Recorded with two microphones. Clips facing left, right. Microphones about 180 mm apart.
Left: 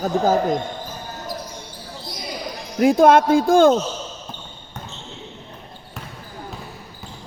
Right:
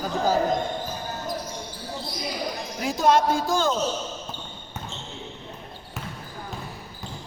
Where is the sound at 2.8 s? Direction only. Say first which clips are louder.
Left 8 dB; 55° left (ahead or behind).